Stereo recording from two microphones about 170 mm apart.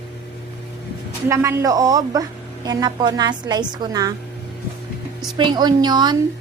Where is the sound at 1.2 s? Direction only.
15° right (ahead or behind).